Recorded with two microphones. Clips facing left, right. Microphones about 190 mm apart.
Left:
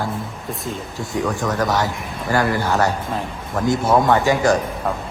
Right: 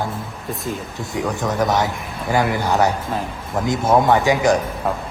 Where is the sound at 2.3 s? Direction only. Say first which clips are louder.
Even; 20° right (ahead or behind).